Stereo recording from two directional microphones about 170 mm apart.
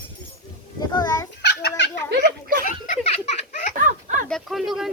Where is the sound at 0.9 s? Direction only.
20° left (ahead or behind).